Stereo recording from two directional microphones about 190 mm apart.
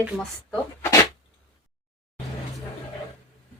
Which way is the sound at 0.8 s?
15° left (ahead or behind).